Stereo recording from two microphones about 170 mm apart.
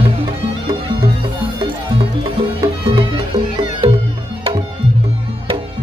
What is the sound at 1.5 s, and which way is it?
Music, 30° right (ahead or behind).